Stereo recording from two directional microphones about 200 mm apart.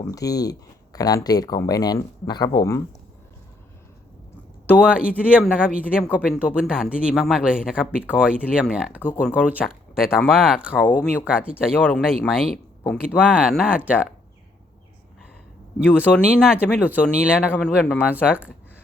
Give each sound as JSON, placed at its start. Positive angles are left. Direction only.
{"t": 0.0, "sound": "speech", "side_deg": 15}
{"t": 4.9, "sound": "speech", "side_deg": -5}
{"t": 16.0, "sound": "speech", "side_deg": 0}
{"t": 17.5, "sound": "speech", "side_deg": 10}